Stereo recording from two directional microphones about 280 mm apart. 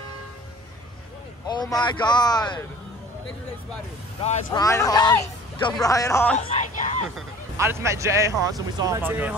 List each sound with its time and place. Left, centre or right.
1.5 s speech: centre
4.2 s speech: centre
6.3 s speech: left
7.5 s speech: centre